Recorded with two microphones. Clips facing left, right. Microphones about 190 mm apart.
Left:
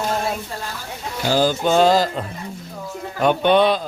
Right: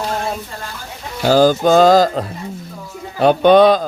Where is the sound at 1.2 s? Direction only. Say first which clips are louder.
Right 6 dB; 45° right (ahead or behind).